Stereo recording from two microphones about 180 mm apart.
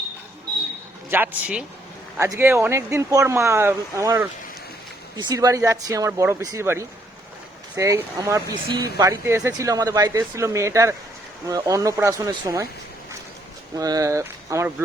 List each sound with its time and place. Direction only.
1.1 s speech: 10° right (ahead or behind)
13.7 s speech: 20° right (ahead or behind)